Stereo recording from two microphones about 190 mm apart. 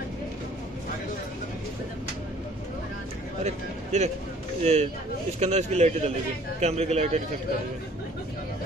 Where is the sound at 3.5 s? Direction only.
35° right (ahead or behind).